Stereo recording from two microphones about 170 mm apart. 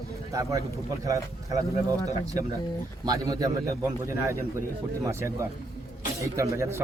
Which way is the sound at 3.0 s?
20° right (ahead or behind).